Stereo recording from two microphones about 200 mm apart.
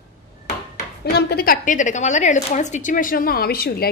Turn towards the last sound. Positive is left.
turn(degrees=50)  # may be behind; listen again after turning